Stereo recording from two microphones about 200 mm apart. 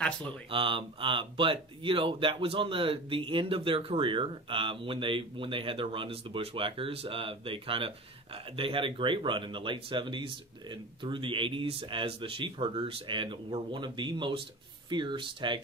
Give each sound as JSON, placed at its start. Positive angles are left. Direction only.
{"t": 0.5, "sound": "speech", "side_deg": -25}